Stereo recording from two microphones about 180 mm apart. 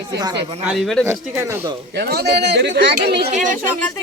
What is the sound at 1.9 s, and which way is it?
Speech, 65° right (ahead or behind).